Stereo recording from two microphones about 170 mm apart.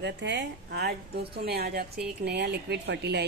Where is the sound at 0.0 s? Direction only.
90° right; by 1.9 s 65° right (ahead or behind).